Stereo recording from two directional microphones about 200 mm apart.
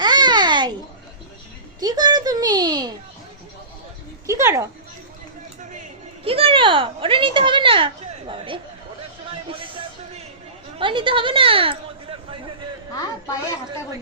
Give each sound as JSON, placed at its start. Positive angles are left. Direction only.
{"t": 0.0, "sound": "babbling", "side_deg": -20}
{"t": 1.8, "sound": "a sound", "side_deg": -20}
{"t": 4.3, "sound": "speech", "side_deg": -15}
{"t": 6.2, "sound": "a sound", "side_deg": -30}
{"t": 8.3, "sound": "chatter", "side_deg": -25}
{"t": 9.5, "sound": "music", "side_deg": -25}
{"t": 10.8, "sound": "speech", "side_deg": -25}